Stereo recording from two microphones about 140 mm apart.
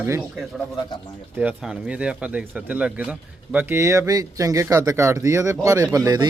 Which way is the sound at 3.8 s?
20° right (ahead or behind).